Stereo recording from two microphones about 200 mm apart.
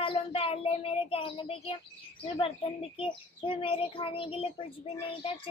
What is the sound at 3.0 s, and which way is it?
A child's voice, 25° left (ahead or behind).